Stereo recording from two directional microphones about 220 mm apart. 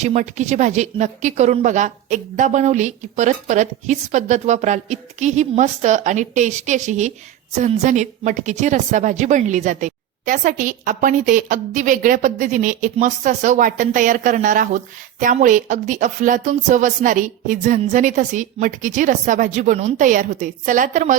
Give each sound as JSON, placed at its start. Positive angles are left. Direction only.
{"t": 0.0, "sound": "a woman's voice", "side_deg": -30}